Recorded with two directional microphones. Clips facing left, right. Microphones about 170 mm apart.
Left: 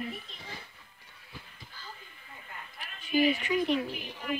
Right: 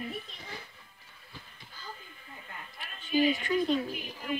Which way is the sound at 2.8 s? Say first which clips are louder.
Even; 10° left (ahead or behind).